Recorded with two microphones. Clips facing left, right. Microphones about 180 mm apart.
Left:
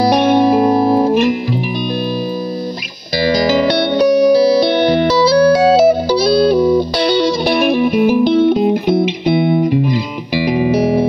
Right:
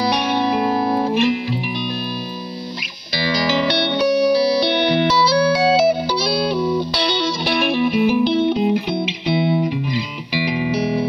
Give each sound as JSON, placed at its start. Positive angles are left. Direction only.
{"t": 0.0, "sound": "music", "side_deg": 45}
{"t": 3.2, "sound": "music", "side_deg": 45}